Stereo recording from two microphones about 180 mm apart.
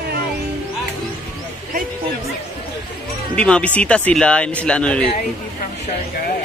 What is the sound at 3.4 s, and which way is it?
Speech, 5° left (ahead or behind).